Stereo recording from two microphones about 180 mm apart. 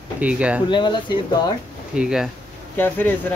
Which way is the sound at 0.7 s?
25° left (ahead or behind).